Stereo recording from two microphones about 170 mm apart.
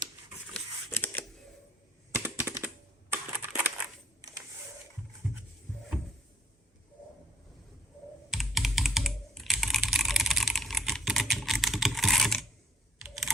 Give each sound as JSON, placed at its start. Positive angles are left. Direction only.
{"t": 0.9, "sound": "camera", "side_deg": 10}
{"t": 2.1, "sound": "computer keyboard", "side_deg": -15}
{"t": 3.1, "sound": "typing", "side_deg": -10}
{"t": 5.2, "sound": "a sound", "side_deg": 0}
{"t": 8.3, "sound": "computer keyboard", "side_deg": 0}
{"t": 13.0, "sound": "camera", "side_deg": 0}